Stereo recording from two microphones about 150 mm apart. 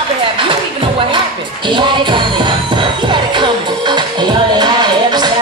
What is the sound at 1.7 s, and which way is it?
Music, 30° right (ahead or behind).